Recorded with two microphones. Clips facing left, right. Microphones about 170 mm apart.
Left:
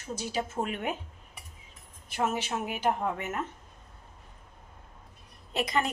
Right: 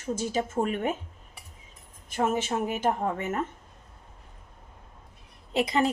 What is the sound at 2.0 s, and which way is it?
A woman's voice, 50° right (ahead or behind).